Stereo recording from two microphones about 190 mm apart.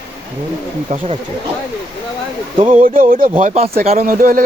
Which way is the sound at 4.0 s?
50° right (ahead or behind).